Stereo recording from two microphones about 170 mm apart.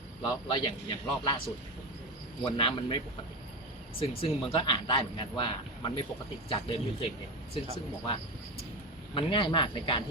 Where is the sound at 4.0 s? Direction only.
30° left (ahead or behind).